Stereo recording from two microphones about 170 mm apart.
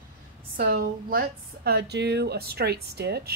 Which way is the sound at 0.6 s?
60° right (ahead or behind).